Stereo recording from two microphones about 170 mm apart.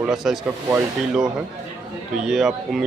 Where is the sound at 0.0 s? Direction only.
Centre (ahead or behind).